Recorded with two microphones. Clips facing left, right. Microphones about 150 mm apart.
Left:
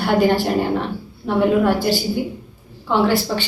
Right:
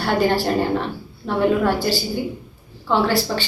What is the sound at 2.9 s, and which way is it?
Speech, 15° left (ahead or behind).